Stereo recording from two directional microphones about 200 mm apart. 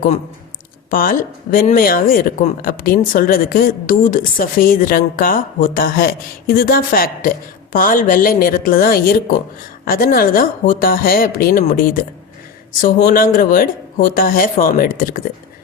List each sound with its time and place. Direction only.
0.9 s speech: 45° left (ahead or behind)